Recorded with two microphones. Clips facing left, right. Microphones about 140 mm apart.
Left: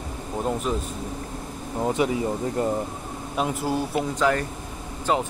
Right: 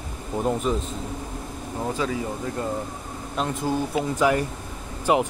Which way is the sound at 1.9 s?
20° left (ahead or behind).